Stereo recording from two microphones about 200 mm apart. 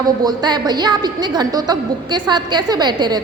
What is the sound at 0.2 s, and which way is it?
A woman's voice, 20° right (ahead or behind).